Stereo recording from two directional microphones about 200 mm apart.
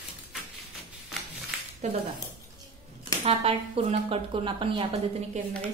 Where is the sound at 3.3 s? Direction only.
30° right (ahead or behind).